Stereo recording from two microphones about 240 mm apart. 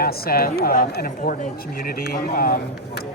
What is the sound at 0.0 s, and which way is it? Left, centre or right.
A man's voice, left.